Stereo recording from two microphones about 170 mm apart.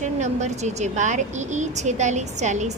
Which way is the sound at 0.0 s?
45° right (ahead or behind).